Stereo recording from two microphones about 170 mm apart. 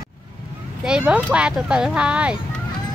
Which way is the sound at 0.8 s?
5° right (ahead or behind).